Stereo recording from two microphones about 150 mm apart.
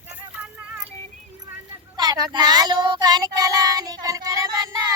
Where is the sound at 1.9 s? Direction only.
30° right (ahead or behind).